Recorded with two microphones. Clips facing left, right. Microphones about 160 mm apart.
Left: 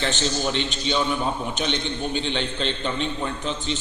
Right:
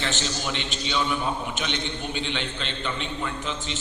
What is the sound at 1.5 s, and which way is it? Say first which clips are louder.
A man's voice: left 4 dB; 35° left (ahead or behind).